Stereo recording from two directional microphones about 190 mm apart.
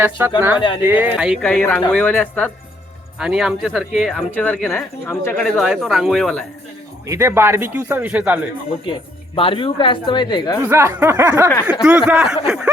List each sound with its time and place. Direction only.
0.0 s speech: 10° right (ahead or behind)
1.5 s speech: 10° left (ahead or behind)
7.1 s speech: 15° right (ahead or behind)
8.9 s speech: 30° left (ahead or behind)
10.6 s speech: 15° right (ahead or behind)